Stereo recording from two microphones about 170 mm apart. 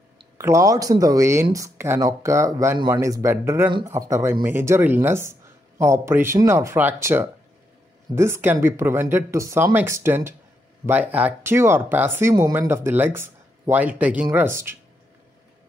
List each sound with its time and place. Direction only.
0.4 s speech: 20° right (ahead or behind)